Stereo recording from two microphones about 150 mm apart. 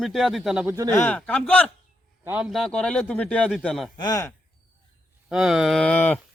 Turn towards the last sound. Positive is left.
turn(degrees=10)  # may be behind; listen again after turning